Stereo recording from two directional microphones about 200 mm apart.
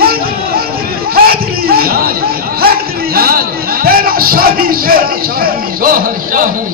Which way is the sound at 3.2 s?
50° right (ahead or behind).